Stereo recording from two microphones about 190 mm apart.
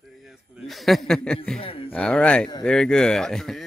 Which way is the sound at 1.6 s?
30° left (ahead or behind).